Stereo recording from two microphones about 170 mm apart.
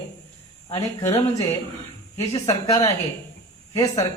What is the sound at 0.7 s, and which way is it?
A man's voice, 25° left (ahead or behind).